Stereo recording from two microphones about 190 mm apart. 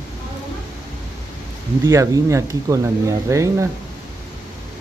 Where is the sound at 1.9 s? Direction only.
15° right (ahead or behind).